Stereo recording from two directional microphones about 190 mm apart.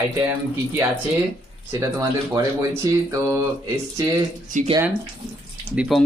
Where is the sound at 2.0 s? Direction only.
15° right (ahead or behind).